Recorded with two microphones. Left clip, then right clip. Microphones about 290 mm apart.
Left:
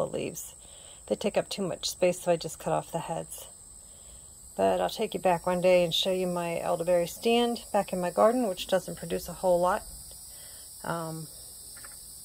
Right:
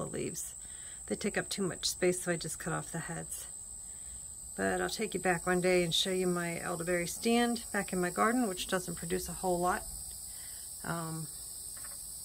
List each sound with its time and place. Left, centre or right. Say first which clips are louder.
0.0 s a sound: left 7 dB; right
1.0 s speech: left 7 dB; right
4.6 s speech: left 7 dB; right
7.1 s speech: left 5 dB; centre
10.8 s speech: left 5 dB; centre